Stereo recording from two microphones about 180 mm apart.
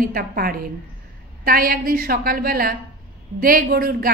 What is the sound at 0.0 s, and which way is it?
A woman's voice, 55° right (ahead or behind).